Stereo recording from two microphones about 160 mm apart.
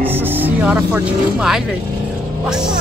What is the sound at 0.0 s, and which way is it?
A woman's voice, 10° right (ahead or behind).